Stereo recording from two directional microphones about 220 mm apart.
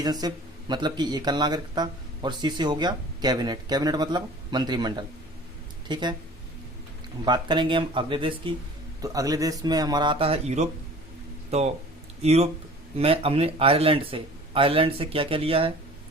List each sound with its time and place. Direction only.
0.0 s speech: 15° right (ahead or behind)
7.3 s speech: 20° right (ahead or behind)